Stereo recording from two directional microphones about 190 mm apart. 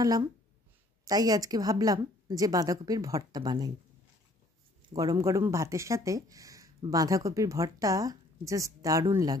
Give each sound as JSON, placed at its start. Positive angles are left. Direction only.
{"t": 0.0, "sound": "a woman's voice", "side_deg": -20}
{"t": 4.8, "sound": "speech", "side_deg": -20}